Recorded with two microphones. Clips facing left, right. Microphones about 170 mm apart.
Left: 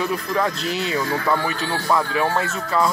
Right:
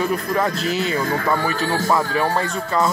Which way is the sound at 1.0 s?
45° right (ahead or behind).